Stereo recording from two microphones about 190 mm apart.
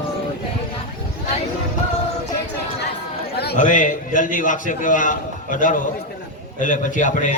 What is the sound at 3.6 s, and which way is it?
A man's voice, 40° left (ahead or behind).